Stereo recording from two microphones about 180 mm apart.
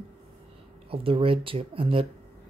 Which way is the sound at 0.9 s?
30° right (ahead or behind).